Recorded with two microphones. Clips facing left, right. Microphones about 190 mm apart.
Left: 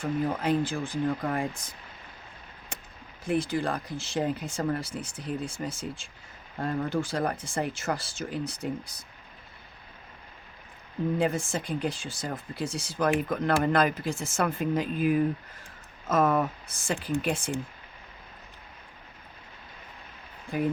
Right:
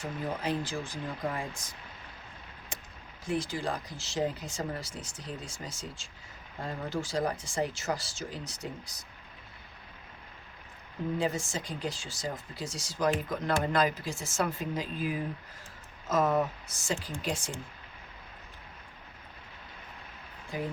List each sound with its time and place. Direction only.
0.0 s speech: 55° left (ahead or behind)
3.2 s speech: 55° left (ahead or behind)
11.2 s speech: 55° left (ahead or behind)